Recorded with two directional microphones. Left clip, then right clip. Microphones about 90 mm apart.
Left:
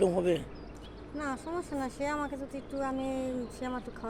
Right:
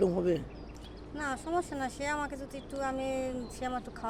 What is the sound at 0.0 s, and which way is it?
Speech, 50° right (ahead or behind).